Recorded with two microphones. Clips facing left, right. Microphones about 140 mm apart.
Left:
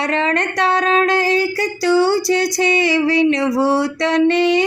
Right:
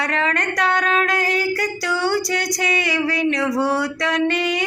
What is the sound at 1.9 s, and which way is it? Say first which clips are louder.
Female singing: left 8 dB; 30° left (ahead or behind).